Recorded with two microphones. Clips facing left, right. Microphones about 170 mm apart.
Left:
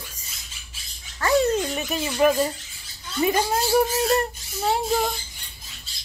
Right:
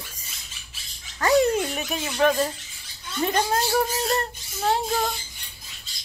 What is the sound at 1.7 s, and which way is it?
Speech, centre (ahead or behind).